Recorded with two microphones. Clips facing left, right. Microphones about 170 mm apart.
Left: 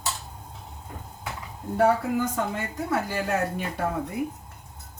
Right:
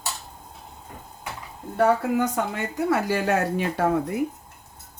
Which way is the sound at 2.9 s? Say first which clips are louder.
Right 4 dB; 85° right.